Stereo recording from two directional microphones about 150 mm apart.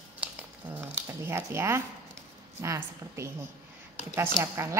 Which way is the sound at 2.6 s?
20° right (ahead or behind).